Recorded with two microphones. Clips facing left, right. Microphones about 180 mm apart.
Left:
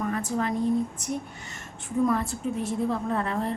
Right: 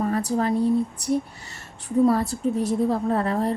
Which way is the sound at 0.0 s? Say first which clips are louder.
Right 5 dB; 35° right (ahead or behind).